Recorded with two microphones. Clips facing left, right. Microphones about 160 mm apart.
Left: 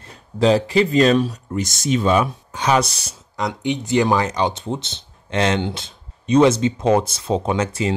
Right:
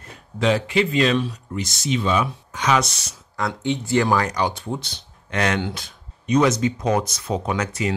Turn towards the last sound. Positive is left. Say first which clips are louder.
# left 3 dB
turn(degrees=25)  # may be behind; listen again after turning